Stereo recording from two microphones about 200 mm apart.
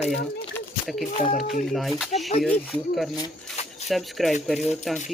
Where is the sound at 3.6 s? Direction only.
30° left (ahead or behind).